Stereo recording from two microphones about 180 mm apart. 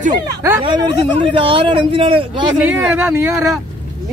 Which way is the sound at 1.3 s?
30° right (ahead or behind).